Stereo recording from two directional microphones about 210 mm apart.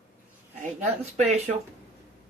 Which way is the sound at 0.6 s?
35° right (ahead or behind).